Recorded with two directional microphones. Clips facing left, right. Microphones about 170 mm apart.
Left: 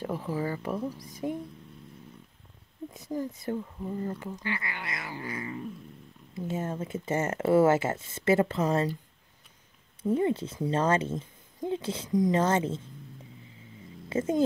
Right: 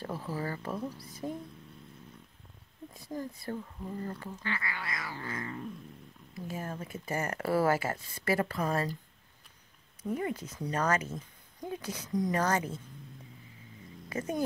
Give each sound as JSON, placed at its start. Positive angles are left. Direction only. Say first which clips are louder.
{"t": 0.0, "sound": "speech", "louder": "left 5 dB", "side_deg": 15}
{"t": 2.9, "sound": "speech", "louder": "left 5 dB", "side_deg": 20}
{"t": 6.3, "sound": "speech", "louder": "left 6 dB", "side_deg": 25}
{"t": 10.0, "sound": "speech", "louder": "left 7 dB", "side_deg": 25}
{"t": 14.0, "sound": "speech", "louder": "left 7 dB", "side_deg": 25}